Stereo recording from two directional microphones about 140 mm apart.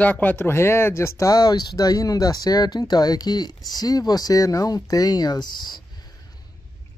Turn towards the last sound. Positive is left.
turn(degrees=30)  # may be behind; listen again after turning